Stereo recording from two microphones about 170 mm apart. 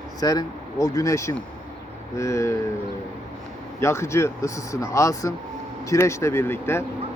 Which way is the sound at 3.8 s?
15° left (ahead or behind).